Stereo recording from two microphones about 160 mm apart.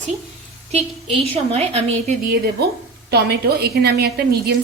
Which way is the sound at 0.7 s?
40° right (ahead or behind).